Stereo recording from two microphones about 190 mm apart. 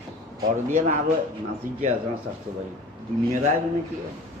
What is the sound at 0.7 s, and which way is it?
Speech, 40° right (ahead or behind).